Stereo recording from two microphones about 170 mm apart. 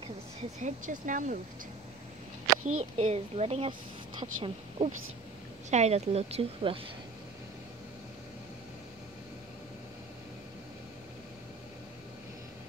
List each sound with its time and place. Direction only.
0.6 s speech: 50° right (ahead or behind)
2.6 s a woman's voice: 40° right (ahead or behind)